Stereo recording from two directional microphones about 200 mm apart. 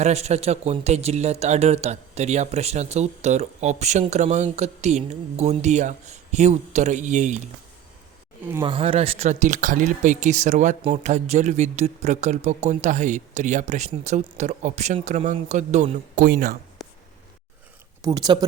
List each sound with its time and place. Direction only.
0.0 s speech: 35° right (ahead or behind)
8.6 s speech: 25° right (ahead or behind); by 16.6 s 45° right (ahead or behind)
18.0 s speech: 20° right (ahead or behind)